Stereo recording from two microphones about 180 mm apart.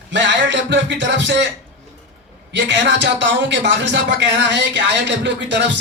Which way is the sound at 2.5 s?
80° right.